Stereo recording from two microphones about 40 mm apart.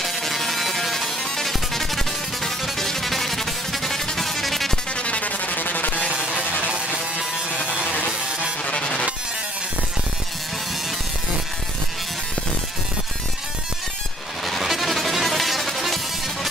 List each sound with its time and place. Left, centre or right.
0.0 s music: centre
4.9 s music: left
6.7 s music: right
7.8 s music: left
8.1 s music: right
8.6 s music: left
14.4 s music: centre